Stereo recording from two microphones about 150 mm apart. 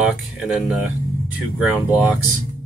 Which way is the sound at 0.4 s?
5° right (ahead or behind).